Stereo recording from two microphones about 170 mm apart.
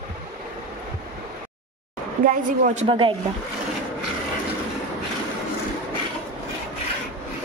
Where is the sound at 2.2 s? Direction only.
50° right (ahead or behind).